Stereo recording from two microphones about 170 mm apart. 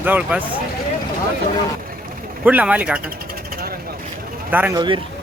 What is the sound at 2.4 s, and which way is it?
Speech, 10° right (ahead or behind).